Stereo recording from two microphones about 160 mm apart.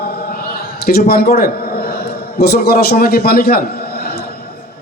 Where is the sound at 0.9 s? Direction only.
75° left (ahead or behind).